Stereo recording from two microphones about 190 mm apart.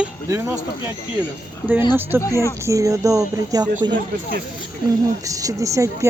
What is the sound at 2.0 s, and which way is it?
A woman's voice, 10° right (ahead or behind).